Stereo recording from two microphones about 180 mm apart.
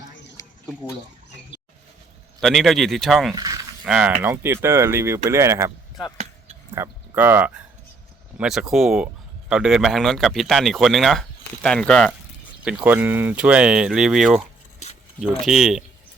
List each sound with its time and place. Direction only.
0.4 s a sound: 20° left (ahead or behind)
2.4 s speech: centre (ahead or behind)
3.3 s a sound: 20° right (ahead or behind)
3.8 s speech: 5° right (ahead or behind)
6.7 s speech: 15° right (ahead or behind); by 12.1 s 5° left (ahead or behind)
12.6 s speech: 10° right (ahead or behind)